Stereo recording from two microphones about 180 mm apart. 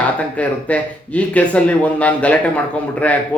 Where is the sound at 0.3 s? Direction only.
5° left (ahead or behind).